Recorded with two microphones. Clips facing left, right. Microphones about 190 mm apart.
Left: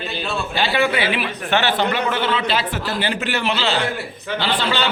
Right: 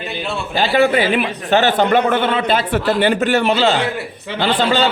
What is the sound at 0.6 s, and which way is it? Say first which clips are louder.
A man's voice: right 6 dB; 45° right (ahead or behind).